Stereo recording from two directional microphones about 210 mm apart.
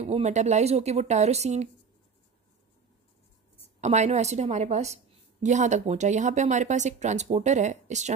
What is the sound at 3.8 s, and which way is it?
A woman's voice, 35° right (ahead or behind).